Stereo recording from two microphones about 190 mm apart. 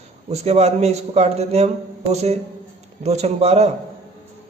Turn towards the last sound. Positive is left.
turn(degrees=-35)  # may be behind; listen again after turning